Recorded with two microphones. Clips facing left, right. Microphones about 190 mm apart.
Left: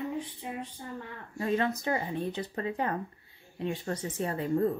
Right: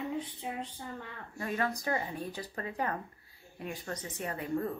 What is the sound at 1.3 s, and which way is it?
Speech, 25° left (ahead or behind).